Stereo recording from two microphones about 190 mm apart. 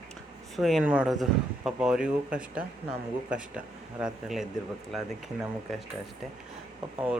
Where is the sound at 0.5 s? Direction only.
Centre (ahead or behind).